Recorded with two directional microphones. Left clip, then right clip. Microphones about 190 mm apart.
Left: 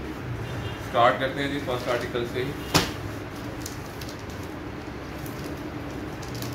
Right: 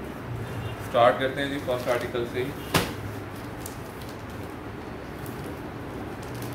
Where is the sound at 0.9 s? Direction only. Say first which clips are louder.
Right 1 dB; 35° right (ahead or behind).